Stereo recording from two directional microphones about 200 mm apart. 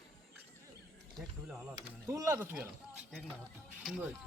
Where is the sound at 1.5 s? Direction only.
5° right (ahead or behind).